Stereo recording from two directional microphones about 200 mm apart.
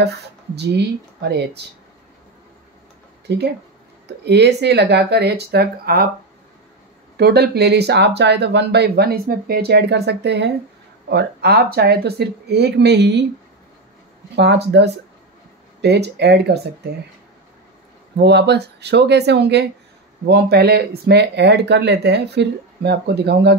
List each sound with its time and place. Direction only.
3.3 s speech: 55° right (ahead or behind)
7.2 s speech: 55° right (ahead or behind)
14.3 s speech: 60° right (ahead or behind)
18.1 s speech: 60° right (ahead or behind)